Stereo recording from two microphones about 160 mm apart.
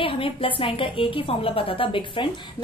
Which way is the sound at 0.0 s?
35° left (ahead or behind).